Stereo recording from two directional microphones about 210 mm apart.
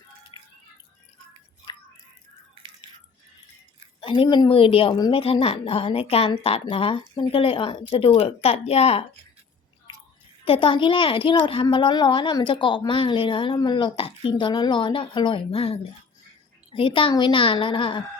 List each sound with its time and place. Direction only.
0.3 s drip: 20° left (ahead or behind)
4.0 s a woman's voice: 25° left (ahead or behind)
10.4 s a woman's voice: 25° left (ahead or behind)